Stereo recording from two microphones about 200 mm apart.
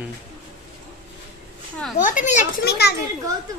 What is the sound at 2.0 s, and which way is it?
Speech, 40° left (ahead or behind).